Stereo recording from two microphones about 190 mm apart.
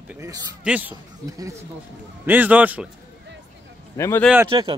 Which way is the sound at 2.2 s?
10° right (ahead or behind).